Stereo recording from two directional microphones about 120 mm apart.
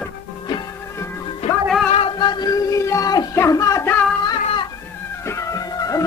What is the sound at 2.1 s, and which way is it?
Music, 40° left (ahead or behind).